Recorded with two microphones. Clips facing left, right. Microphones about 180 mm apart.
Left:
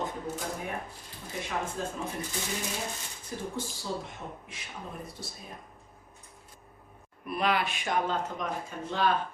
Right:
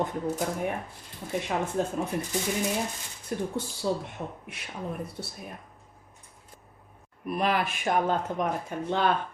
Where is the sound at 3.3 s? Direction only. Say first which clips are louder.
Right 5 dB; 60° right (ahead or behind).